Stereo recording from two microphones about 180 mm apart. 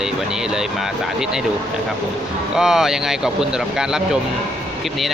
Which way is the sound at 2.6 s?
5° right (ahead or behind).